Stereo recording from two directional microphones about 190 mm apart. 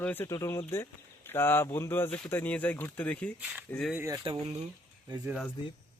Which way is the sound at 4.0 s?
15° right (ahead or behind).